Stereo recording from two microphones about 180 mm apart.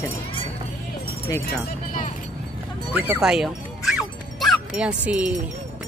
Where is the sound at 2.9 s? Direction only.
10° right (ahead or behind).